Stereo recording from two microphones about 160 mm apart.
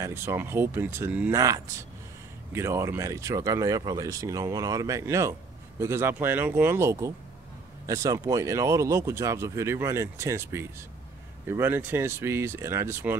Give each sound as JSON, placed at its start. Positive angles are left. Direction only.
{"t": 0.0, "sound": "speech", "side_deg": -15}
{"t": 2.5, "sound": "speech", "side_deg": -15}